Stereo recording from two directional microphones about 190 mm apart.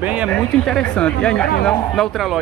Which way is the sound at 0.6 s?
5° left (ahead or behind).